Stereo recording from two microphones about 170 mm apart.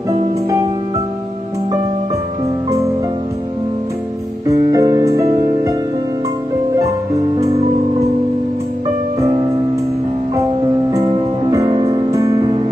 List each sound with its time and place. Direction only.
4.5 s music: 20° right (ahead or behind)
10.9 s music: 25° right (ahead or behind)